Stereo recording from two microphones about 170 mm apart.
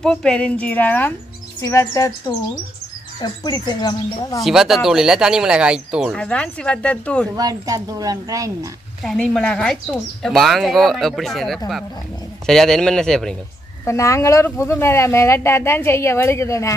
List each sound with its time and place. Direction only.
0.0 s speech: 5° left (ahead or behind); by 4.4 s 25° left (ahead or behind)
4.4 s speech: centre (ahead or behind)
6.1 s speech: 5° left (ahead or behind)
7.3 s a woman's voice: 20° right (ahead or behind)
9.0 s speech: centre (ahead or behind)
13.8 s speech: 20° left (ahead or behind)